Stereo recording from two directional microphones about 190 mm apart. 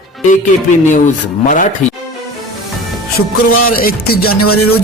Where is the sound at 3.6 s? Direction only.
50° left (ahead or behind).